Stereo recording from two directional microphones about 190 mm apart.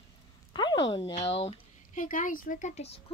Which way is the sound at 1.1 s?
30° left (ahead or behind).